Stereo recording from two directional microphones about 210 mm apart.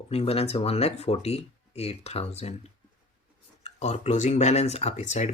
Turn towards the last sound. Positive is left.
turn(degrees=35)  # may be behind; listen again after turning